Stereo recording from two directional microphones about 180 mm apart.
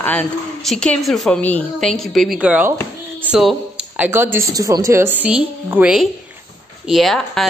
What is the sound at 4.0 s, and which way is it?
A woman's voice, 10° right (ahead or behind).